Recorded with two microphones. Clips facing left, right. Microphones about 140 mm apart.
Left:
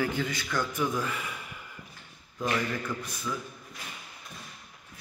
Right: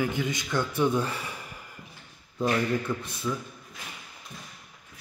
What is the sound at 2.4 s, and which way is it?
Speech, 30° right (ahead or behind).